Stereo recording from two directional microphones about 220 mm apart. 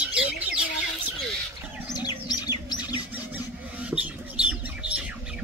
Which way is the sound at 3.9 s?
5° right (ahead or behind).